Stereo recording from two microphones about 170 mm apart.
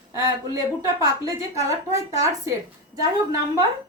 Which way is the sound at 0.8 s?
20° right (ahead or behind).